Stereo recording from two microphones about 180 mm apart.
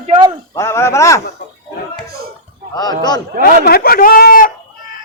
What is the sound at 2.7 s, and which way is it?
Speech, 20° left (ahead or behind).